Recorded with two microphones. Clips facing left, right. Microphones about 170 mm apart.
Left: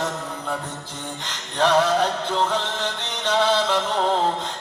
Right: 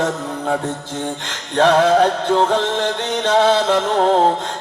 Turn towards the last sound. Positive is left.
turn(degrees=-55)  # may be behind; listen again after turning